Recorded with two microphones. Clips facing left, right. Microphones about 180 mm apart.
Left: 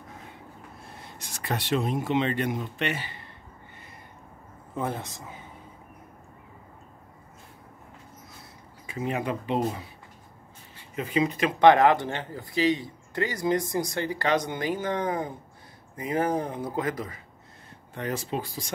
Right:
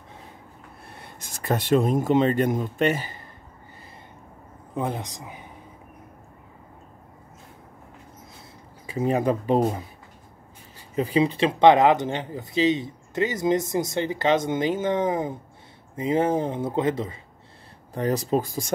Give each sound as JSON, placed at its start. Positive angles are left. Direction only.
{"t": 0.8, "sound": "a sound", "side_deg": -65}
{"t": 1.4, "sound": "speech", "side_deg": -50}
{"t": 4.7, "sound": "speech", "side_deg": -15}
{"t": 8.8, "sound": "speech", "side_deg": -35}
{"t": 11.0, "sound": "speech", "side_deg": -30}
{"t": 17.9, "sound": "speech", "side_deg": -40}